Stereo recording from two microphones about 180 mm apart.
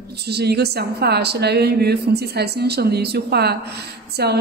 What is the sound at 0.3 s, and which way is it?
Speech, 65° right (ahead or behind).